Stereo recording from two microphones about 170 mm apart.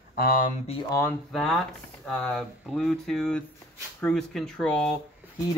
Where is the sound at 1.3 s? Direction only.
Centre (ahead or behind).